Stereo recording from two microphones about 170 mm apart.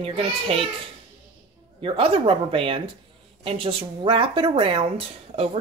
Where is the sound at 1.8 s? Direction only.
30° right (ahead or behind).